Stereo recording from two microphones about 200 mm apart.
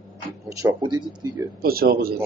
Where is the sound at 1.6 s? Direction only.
50° right (ahead or behind).